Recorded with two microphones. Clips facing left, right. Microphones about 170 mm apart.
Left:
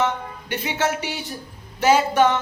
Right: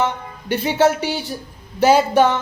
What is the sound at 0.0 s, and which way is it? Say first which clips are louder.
A woman's voice: right 1 dB; 35° right (ahead or behind).